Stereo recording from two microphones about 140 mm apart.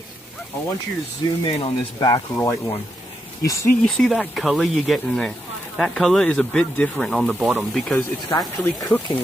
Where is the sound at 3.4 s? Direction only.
25° left (ahead or behind).